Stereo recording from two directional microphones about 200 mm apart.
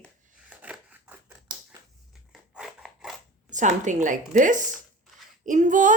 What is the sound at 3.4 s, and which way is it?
Speech, 35° right (ahead or behind).